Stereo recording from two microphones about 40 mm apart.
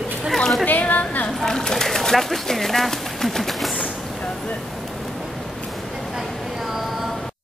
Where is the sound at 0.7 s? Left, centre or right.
Left.